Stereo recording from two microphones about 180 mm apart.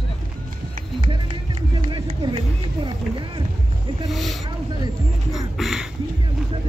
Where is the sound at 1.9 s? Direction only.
30° right (ahead or behind).